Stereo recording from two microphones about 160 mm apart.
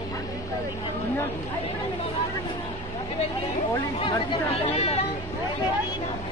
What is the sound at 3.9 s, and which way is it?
Speech, 35° left (ahead or behind).